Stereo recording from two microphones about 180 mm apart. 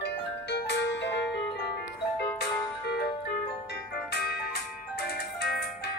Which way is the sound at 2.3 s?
65° left (ahead or behind).